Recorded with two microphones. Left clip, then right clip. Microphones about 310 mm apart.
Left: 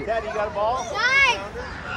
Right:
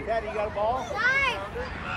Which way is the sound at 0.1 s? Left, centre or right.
Left.